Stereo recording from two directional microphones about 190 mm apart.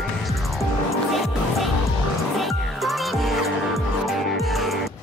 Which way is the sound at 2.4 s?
Centre (ahead or behind).